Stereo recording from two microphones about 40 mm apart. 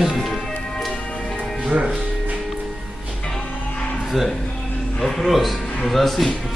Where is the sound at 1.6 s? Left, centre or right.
Right.